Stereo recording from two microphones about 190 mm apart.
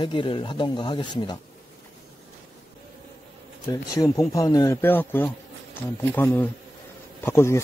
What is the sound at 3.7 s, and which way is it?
Speech, 15° left (ahead or behind).